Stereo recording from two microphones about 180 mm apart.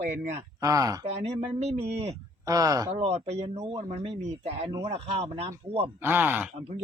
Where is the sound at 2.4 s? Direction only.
20° right (ahead or behind).